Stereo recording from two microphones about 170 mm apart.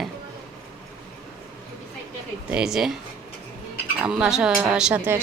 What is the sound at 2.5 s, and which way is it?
Speech, 5° right (ahead or behind).